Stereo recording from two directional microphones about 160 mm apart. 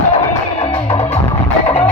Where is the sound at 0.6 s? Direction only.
40° left (ahead or behind).